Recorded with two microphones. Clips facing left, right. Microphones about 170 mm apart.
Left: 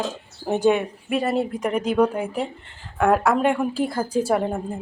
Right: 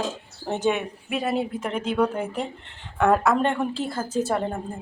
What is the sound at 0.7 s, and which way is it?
Speech, 5° right (ahead or behind).